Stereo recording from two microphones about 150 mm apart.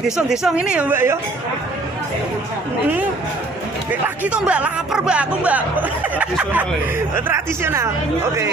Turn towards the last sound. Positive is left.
turn(degrees=-15)  # may be behind; listen again after turning